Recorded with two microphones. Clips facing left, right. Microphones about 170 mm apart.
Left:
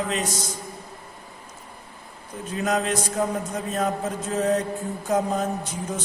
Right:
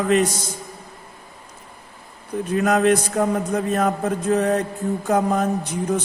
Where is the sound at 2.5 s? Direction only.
60° right (ahead or behind).